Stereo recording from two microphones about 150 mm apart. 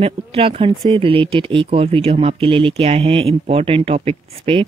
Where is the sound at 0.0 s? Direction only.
40° right (ahead or behind).